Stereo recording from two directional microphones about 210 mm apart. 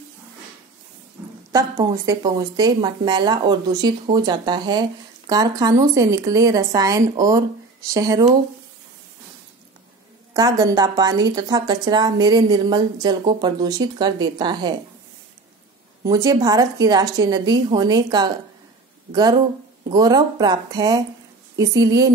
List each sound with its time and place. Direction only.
1.5 s a woman's voice: 15° right (ahead or behind)
10.3 s a woman's voice: 20° right (ahead or behind)
16.0 s a woman's voice: 20° right (ahead or behind)
19.9 s a woman's voice: 20° right (ahead or behind)